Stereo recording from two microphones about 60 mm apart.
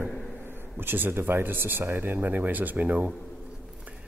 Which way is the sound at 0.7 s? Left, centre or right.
Right.